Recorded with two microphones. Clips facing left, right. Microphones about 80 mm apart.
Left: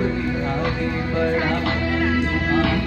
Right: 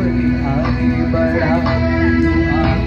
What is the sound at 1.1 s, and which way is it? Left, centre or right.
Music, centre.